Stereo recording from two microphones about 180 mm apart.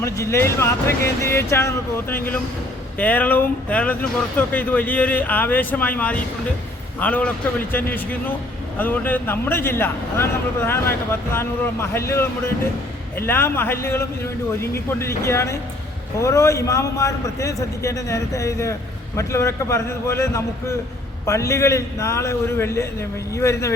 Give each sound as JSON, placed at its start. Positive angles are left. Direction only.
{"t": 0.0, "sound": "speech", "side_deg": 15}